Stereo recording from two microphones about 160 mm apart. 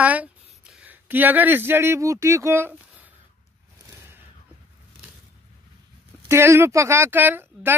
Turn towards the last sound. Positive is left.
turn(degrees=-15)  # may be behind; listen again after turning